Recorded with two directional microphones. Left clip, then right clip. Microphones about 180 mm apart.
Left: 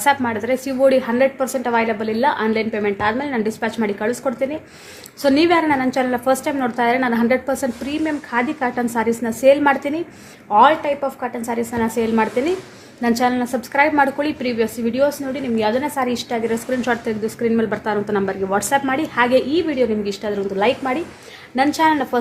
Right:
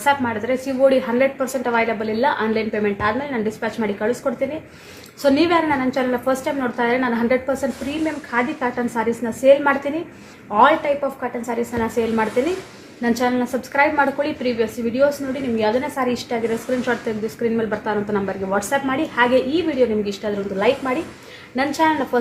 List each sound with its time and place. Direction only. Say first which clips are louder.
0.0 s a woman's voice: left 1 dB; 45° left (ahead or behind)